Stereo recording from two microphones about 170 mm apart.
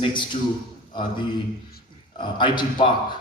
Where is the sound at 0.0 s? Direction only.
30° left (ahead or behind).